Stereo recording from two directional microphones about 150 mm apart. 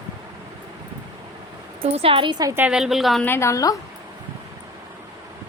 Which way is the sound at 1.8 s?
40° right (ahead or behind).